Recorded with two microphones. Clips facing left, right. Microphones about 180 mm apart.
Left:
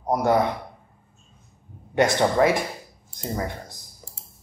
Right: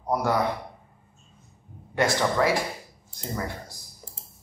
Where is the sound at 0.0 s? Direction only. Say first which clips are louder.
Left 4 dB; 20° left (ahead or behind).